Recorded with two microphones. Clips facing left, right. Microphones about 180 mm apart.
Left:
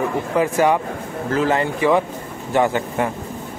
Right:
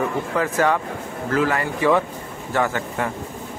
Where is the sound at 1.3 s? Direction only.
25° left (ahead or behind).